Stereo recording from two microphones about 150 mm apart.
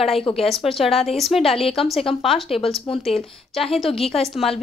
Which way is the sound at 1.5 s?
40° left (ahead or behind).